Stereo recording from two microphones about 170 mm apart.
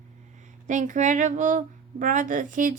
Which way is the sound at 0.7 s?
45° right (ahead or behind).